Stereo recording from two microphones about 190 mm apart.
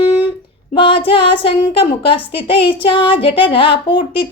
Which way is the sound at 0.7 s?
30° left (ahead or behind).